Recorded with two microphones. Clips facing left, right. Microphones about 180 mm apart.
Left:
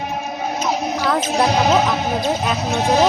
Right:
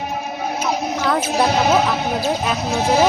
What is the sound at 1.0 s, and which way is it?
Speech, centre (ahead or behind).